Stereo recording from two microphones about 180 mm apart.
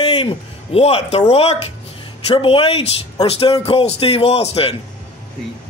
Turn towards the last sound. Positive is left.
turn(degrees=30)  # may be behind; listen again after turning